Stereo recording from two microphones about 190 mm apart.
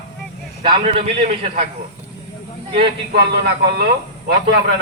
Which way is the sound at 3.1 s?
60° right (ahead or behind).